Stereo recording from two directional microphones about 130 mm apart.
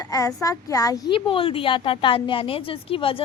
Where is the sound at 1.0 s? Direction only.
40° left (ahead or behind).